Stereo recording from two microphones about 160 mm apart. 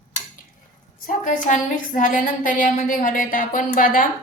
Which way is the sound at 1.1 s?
55° left (ahead or behind).